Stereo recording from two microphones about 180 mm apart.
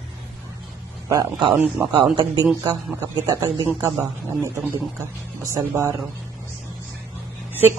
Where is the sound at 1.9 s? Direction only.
25° right (ahead or behind).